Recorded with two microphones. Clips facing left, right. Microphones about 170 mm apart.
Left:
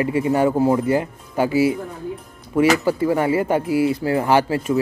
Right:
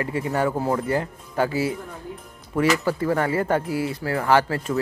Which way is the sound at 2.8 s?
15° left (ahead or behind).